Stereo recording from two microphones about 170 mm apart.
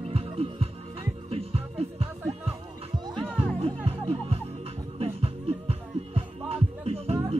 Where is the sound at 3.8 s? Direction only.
35° right (ahead or behind).